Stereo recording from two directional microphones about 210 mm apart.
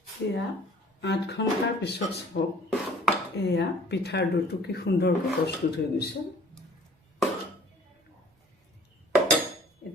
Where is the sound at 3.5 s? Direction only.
50° left (ahead or behind).